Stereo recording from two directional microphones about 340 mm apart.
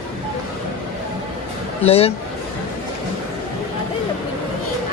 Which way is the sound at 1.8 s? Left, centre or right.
Centre.